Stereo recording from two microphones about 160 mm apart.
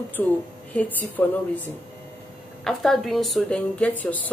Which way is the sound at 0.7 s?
10° left (ahead or behind).